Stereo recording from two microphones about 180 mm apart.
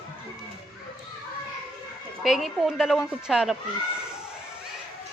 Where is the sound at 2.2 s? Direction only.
Centre (ahead or behind).